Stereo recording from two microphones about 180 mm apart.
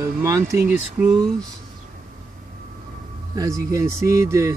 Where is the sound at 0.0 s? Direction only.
15° right (ahead or behind).